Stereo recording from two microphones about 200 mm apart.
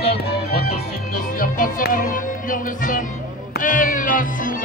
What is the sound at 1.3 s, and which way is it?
Music, 45° left (ahead or behind).